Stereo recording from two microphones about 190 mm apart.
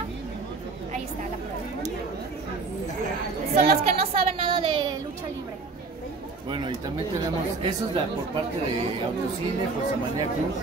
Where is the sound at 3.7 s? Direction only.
30° right (ahead or behind).